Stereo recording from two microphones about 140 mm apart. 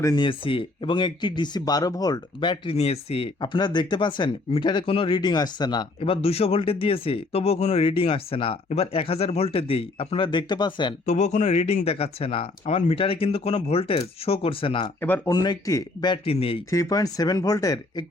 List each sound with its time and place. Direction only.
0.0 s speech: 30° left (ahead or behind)
3.4 s speech: 35° left (ahead or behind)
11.0 s speech: 55° left (ahead or behind); by 14.9 s 35° left (ahead or behind)
15.0 s speech: 15° left (ahead or behind)
15.3 s speech: 30° left (ahead or behind)
16.6 s speech: 25° left (ahead or behind)